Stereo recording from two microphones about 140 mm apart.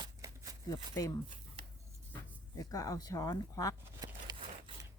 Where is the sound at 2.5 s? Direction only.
25° left (ahead or behind).